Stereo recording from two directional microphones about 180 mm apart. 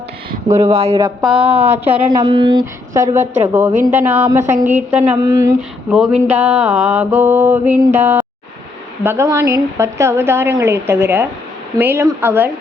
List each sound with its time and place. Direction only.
0.7 s speech: 35° right (ahead or behind)
0.9 s speech: 25° right (ahead or behind)
1.3 s a woman's voice: 10° right (ahead or behind)
2.0 s speech: 25° right (ahead or behind)
2.9 s a woman's voice: 15° right (ahead or behind)
5.9 s a sound: 5° right (ahead or behind)
6.2 s a woman's voice: 5° right (ahead or behind)